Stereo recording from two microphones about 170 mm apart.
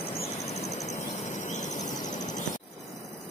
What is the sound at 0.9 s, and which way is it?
Cricket, 45° left (ahead or behind).